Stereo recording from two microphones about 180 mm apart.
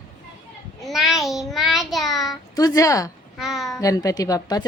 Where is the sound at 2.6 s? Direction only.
20° left (ahead or behind).